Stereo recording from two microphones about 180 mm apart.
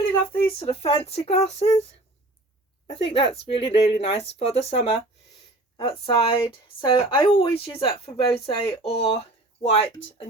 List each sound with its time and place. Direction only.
0.6 s speech: 30° left (ahead or behind)
3.1 s speech: 30° left (ahead or behind)